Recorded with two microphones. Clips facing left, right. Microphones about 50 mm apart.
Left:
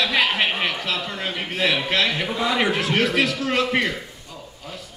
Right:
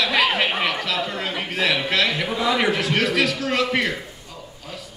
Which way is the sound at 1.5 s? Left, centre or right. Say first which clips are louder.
Even; left.